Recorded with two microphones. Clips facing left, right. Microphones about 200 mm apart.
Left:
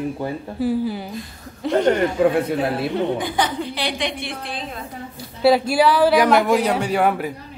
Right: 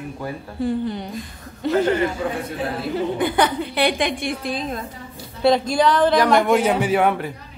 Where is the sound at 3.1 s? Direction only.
60° right (ahead or behind); by 4.6 s 45° right (ahead or behind).